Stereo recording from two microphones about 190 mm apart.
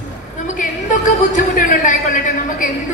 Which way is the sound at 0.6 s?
45° left (ahead or behind).